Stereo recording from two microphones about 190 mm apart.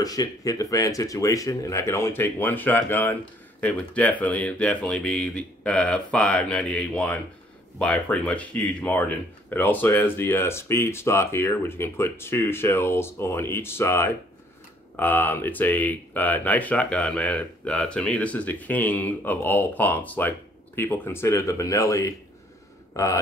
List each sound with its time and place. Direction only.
0.0 s speech: 20° left (ahead or behind)